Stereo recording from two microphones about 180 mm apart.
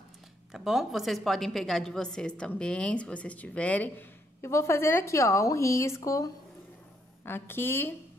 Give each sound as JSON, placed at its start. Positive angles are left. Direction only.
{"t": 0.5, "sound": "a woman's voice", "side_deg": 0}